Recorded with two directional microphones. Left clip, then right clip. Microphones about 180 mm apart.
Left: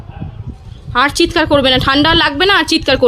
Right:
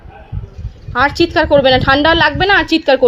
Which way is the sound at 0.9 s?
25° left (ahead or behind).